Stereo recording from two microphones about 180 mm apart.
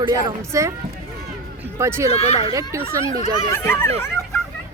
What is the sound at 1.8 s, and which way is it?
Speech, 15° right (ahead or behind).